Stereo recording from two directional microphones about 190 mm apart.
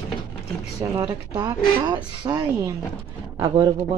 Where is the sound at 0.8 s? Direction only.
15° right (ahead or behind).